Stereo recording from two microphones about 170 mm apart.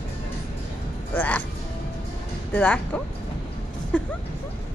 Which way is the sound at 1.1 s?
10° left (ahead or behind).